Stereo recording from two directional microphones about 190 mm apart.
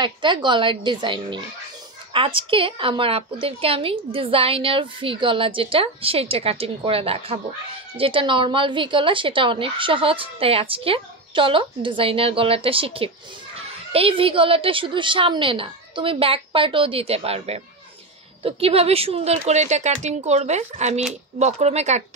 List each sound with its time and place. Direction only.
0.0 s a woman's voice: 25° right (ahead or behind)